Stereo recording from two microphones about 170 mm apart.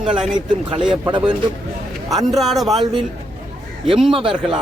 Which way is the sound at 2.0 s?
Centre (ahead or behind).